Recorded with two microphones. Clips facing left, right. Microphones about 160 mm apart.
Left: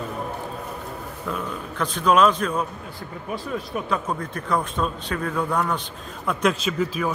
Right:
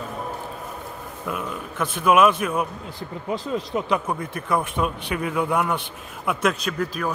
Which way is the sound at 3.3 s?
20° right (ahead or behind).